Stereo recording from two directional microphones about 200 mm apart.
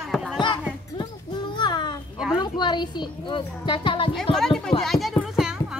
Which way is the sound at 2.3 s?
20° left (ahead or behind).